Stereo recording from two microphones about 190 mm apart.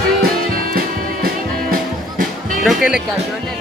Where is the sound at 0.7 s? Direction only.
50° right (ahead or behind).